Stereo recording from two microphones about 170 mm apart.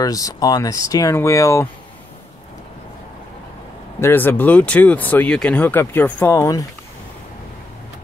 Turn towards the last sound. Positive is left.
turn(degrees=20)  # may be behind; listen again after turning